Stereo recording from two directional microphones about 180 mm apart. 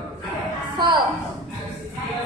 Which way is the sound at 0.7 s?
25° right (ahead or behind).